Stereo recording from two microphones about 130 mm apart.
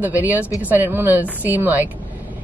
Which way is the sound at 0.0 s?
15° right (ahead or behind).